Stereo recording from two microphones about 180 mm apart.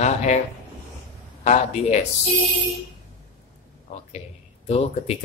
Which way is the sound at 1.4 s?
40° left (ahead or behind).